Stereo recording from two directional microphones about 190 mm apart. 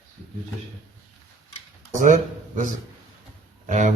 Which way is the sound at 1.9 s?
40° right (ahead or behind).